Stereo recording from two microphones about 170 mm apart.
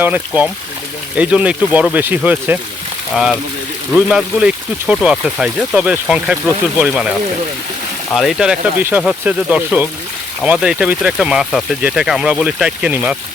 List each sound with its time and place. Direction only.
0.0 s speech: 10° right (ahead or behind)
3.9 s speech: 5° right (ahead or behind)
8.1 s speech: centre (ahead or behind)